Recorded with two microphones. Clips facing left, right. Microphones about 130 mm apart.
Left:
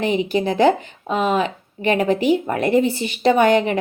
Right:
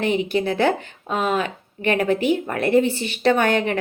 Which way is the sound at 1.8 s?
30° left (ahead or behind).